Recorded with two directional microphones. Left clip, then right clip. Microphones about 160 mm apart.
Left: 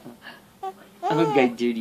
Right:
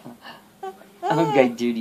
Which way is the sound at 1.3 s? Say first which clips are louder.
Right 2 dB; 25° right (ahead or behind).